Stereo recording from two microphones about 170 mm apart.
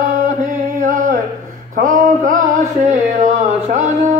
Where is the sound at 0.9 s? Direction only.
50° right (ahead or behind).